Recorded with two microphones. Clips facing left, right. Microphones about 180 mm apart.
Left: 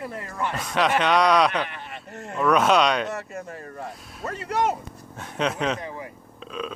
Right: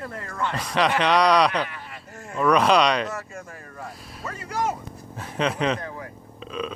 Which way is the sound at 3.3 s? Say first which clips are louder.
Left 4 dB; 35° left (ahead or behind).